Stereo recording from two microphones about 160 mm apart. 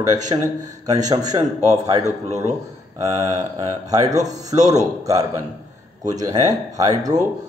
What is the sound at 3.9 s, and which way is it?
Speech, 25° right (ahead or behind).